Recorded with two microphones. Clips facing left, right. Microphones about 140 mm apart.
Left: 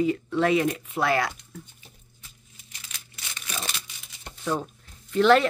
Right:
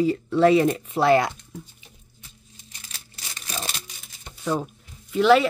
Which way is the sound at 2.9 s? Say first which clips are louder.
Even; 35° right (ahead or behind).